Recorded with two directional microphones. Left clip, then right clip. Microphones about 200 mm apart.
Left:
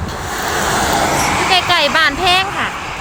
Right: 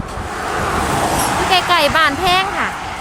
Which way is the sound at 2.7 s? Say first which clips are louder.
Left 1 dB; 40° right (ahead or behind).